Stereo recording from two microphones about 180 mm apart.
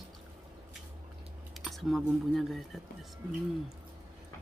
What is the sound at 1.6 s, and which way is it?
Speech, centre (ahead or behind).